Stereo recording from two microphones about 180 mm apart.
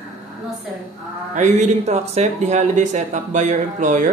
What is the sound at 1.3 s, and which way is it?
Speech, 40° right (ahead or behind).